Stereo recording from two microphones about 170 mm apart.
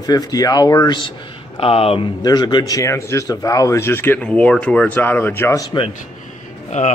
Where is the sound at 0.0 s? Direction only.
20° left (ahead or behind).